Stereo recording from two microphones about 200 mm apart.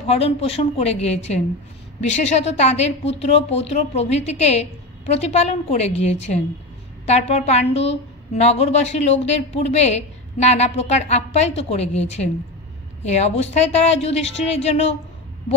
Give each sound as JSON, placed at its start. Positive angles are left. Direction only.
{"t": 0.0, "sound": "a woman's voice", "side_deg": 30}
{"t": 13.0, "sound": "a woman's voice", "side_deg": 35}